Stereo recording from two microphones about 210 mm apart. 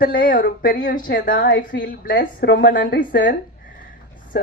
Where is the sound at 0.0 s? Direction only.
40° left (ahead or behind).